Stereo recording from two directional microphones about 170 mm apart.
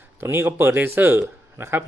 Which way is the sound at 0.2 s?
10° right (ahead or behind).